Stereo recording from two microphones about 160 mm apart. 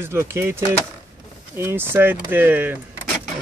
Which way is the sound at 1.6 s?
15° right (ahead or behind).